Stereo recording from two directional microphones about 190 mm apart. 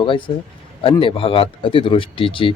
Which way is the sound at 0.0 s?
25° left (ahead or behind).